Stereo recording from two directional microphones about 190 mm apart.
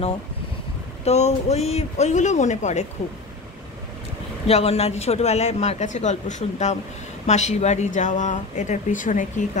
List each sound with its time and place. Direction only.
1.0 s a man's voice: 35° left (ahead or behind)
4.5 s a man's voice: 35° left (ahead or behind)